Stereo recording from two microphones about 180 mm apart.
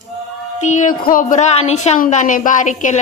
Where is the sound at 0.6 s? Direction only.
40° left (ahead or behind).